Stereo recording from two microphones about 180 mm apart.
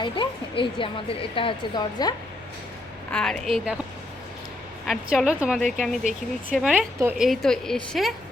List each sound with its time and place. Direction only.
0.0 s a woman's voice: 25° left (ahead or behind)
3.1 s a woman's voice: 5° left (ahead or behind)
4.9 s a woman's voice: centre (ahead or behind)
7.3 s a woman's voice: centre (ahead or behind)